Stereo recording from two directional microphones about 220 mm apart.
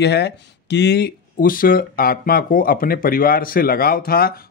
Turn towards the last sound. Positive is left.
turn(degrees=40)  # may be behind; listen again after turning